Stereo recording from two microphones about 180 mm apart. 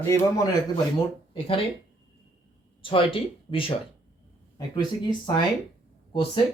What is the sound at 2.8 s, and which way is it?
Speech, 30° left (ahead or behind).